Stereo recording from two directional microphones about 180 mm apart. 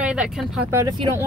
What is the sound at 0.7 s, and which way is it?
Speech, 15° right (ahead or behind).